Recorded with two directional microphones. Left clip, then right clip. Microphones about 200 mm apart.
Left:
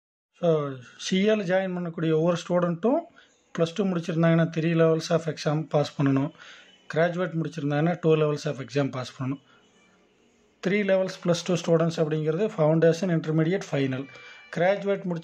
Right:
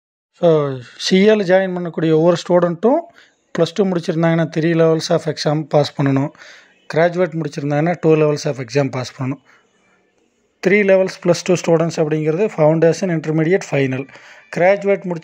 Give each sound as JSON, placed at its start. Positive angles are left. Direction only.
{"t": 0.4, "sound": "speech", "side_deg": -35}
{"t": 2.7, "sound": "speech", "side_deg": -20}
{"t": 10.6, "sound": "speech", "side_deg": -30}